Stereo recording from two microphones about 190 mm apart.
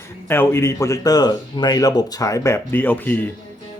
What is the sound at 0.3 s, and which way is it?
Speech, 10° left (ahead or behind).